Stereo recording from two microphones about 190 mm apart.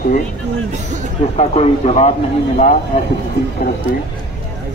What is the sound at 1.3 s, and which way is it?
A man's voice, 35° left (ahead or behind).